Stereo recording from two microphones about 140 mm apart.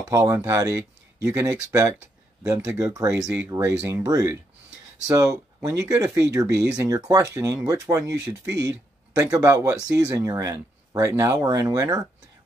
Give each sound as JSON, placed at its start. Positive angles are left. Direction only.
{"t": 0.1, "sound": "speech", "side_deg": -20}
{"t": 9.1, "sound": "speech", "side_deg": -25}